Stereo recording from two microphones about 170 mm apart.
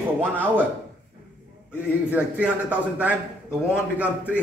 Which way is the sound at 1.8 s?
10° right (ahead or behind).